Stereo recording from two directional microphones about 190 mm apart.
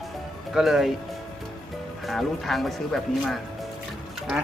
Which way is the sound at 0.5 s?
Centre (ahead or behind).